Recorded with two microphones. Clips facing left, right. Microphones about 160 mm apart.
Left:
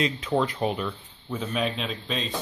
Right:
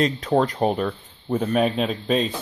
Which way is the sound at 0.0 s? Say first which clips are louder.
Right 5 dB; 40° right (ahead or behind).